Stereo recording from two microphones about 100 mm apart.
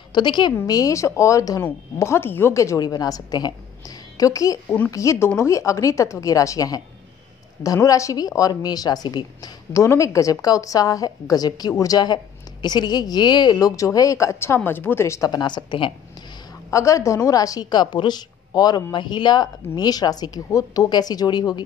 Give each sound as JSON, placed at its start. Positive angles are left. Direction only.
{"t": 0.1, "sound": "speech", "side_deg": 50}
{"t": 0.7, "sound": "a woman's voice", "side_deg": 35}
{"t": 4.6, "sound": "a woman's voice", "side_deg": 15}
{"t": 4.9, "sound": "a woman's voice", "side_deg": 30}
{"t": 9.8, "sound": "a woman's voice", "side_deg": 30}
{"t": 15.3, "sound": "speech", "side_deg": 45}
{"t": 16.7, "sound": "a woman's voice", "side_deg": 30}